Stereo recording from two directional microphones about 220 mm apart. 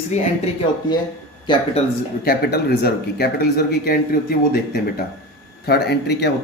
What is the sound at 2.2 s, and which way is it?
Speech, 45° left (ahead or behind).